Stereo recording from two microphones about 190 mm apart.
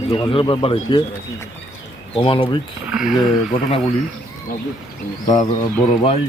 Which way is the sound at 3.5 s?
30° left (ahead or behind).